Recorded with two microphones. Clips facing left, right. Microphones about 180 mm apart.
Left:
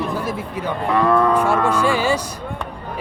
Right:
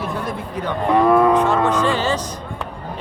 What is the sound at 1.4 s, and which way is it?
Speech, 10° left (ahead or behind).